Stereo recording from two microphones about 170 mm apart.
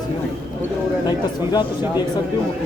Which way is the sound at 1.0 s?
25° left (ahead or behind).